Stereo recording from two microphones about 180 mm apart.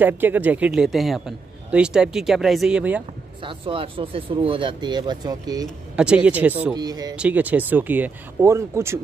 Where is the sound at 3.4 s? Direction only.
30° right (ahead or behind).